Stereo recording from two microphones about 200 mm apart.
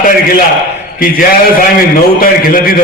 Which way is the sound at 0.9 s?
45° left (ahead or behind).